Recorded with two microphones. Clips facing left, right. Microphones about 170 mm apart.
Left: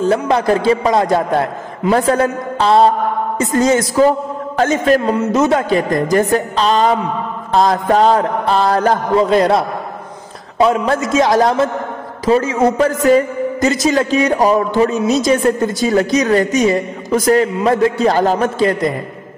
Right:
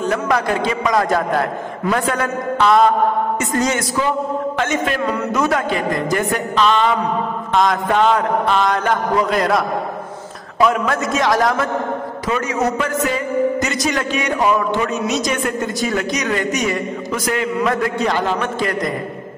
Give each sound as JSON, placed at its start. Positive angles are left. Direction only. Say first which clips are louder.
{"t": 0.0, "sound": "a man's voice", "louder": "left 4 dB", "side_deg": 30}
{"t": 5.8, "sound": "a man's voice", "louder": "left 5 dB", "side_deg": 35}